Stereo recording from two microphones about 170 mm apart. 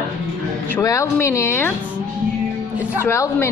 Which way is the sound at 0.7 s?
20° left (ahead or behind).